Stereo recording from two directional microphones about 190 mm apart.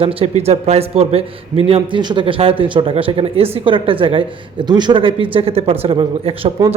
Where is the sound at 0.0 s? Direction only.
30° right (ahead or behind).